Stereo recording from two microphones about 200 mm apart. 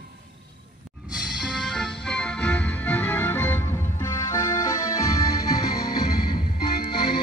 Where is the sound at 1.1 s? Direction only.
Centre (ahead or behind).